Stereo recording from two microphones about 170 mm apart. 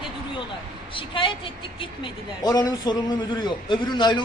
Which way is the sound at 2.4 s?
20° left (ahead or behind).